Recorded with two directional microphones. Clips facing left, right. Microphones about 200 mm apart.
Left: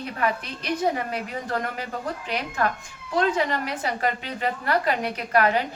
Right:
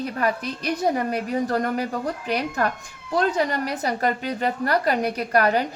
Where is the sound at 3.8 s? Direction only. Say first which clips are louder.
Right 5 dB; 40° right (ahead or behind).